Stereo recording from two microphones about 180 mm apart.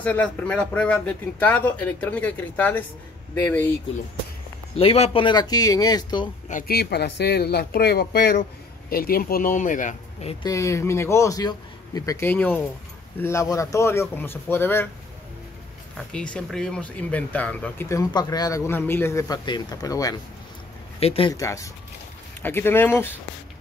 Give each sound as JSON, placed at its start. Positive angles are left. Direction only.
{"t": 0.0, "sound": "speech", "side_deg": 10}
{"t": 4.7, "sound": "speech", "side_deg": 35}
{"t": 6.5, "sound": "speech", "side_deg": 60}
{"t": 10.4, "sound": "speech", "side_deg": 15}
{"t": 16.1, "sound": "speech", "side_deg": 5}
{"t": 21.0, "sound": "speech", "side_deg": 35}
{"t": 21.3, "sound": "speech", "side_deg": 20}